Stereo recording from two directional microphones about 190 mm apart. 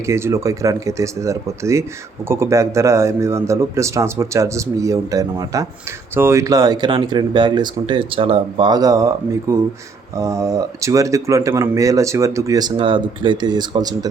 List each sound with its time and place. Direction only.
0.0 s speech: 15° right (ahead or behind)